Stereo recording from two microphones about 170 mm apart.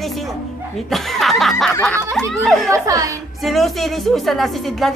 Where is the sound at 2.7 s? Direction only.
20° right (ahead or behind).